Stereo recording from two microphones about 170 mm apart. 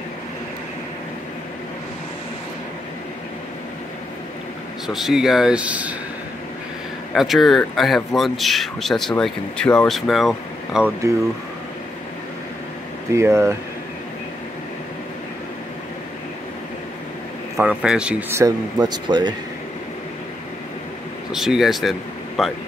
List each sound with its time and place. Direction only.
4.8 s a man's voice: centre (ahead or behind)
7.2 s a man's voice: centre (ahead or behind)
13.1 s speech: 15° right (ahead or behind)
17.6 s speech: 5° right (ahead or behind)
18.4 s speech: 25° right (ahead or behind)
21.3 s a man's voice: centre (ahead or behind)